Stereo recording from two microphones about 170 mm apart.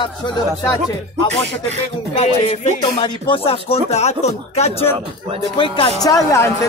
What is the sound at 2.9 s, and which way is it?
Speech, 30° left (ahead or behind).